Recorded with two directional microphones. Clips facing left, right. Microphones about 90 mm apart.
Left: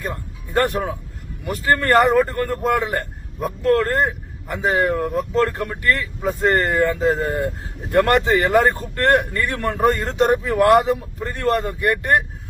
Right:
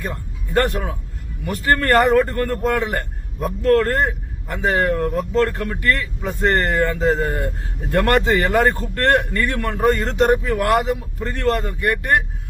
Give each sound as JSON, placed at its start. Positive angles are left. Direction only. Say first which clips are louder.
{"t": 0.0, "sound": "speech", "louder": "even", "side_deg": 25}
{"t": 2.0, "sound": "speech", "louder": "even", "side_deg": 5}
{"t": 2.3, "sound": "speech", "louder": "even", "side_deg": 15}
{"t": 4.4, "sound": "speech", "louder": "even", "side_deg": 5}